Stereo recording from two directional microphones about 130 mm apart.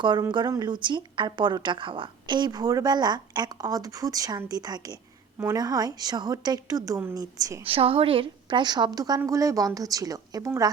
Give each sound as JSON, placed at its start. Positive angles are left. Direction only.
{"t": 0.0, "sound": "a woman's voice", "side_deg": -35}
{"t": 7.6, "sound": "a woman's voice", "side_deg": -45}